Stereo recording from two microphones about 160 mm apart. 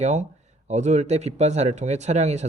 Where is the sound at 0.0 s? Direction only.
45° right (ahead or behind).